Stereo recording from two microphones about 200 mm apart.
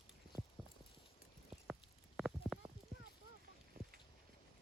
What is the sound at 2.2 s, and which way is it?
Clip-clop, centre (ahead or behind).